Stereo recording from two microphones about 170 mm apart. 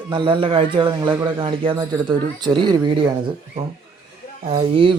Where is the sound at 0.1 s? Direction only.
30° right (ahead or behind).